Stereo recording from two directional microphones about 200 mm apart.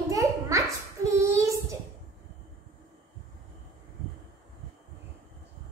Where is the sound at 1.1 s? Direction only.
15° right (ahead or behind).